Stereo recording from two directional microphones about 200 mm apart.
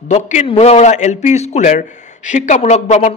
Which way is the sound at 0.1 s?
35° left (ahead or behind).